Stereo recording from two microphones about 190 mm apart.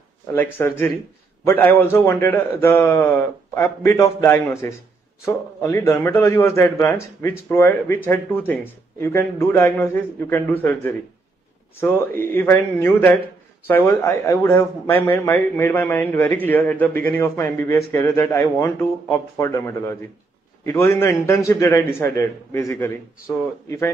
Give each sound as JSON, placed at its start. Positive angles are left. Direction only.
{"t": 0.3, "sound": "speech", "side_deg": 15}